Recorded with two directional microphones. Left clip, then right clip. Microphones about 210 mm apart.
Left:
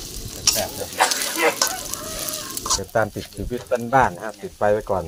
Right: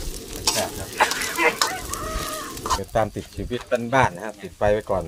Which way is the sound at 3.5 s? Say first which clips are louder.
Left 1 dB; 10° right (ahead or behind).